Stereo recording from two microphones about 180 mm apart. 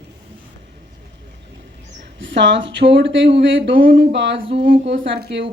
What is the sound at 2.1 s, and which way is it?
Speech, 85° right.